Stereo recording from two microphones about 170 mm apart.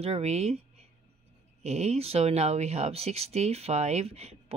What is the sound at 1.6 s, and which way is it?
Speech, 40° right (ahead or behind).